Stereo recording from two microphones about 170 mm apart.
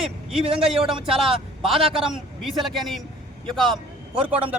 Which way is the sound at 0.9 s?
Centre (ahead or behind).